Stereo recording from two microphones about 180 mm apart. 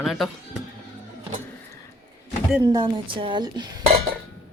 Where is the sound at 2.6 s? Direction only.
25° right (ahead or behind).